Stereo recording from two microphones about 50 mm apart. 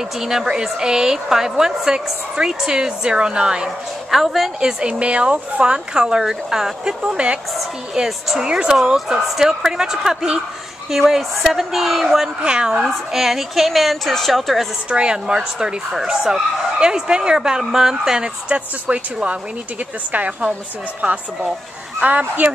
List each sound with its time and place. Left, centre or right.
0.2 s a woman's voice: centre
4.8 s a woman's voice: right; by 12.3 s centre
12.4 s a woman's voice: centre
13.1 s a woman's voice: centre
14.9 s a woman's voice: centre
22.0 s speech: right